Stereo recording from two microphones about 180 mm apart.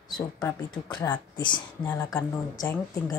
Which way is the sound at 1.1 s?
25° left (ahead or behind).